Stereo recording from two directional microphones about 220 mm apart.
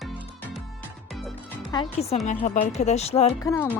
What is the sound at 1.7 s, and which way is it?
Speech, 25° left (ahead or behind).